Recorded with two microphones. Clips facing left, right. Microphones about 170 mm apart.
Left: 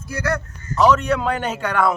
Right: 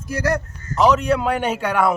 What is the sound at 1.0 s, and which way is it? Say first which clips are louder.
Speech: right 2 dB; 10° right (ahead or behind).